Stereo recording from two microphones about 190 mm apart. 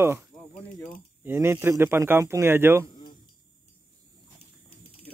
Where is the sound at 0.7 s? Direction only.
5° left (ahead or behind).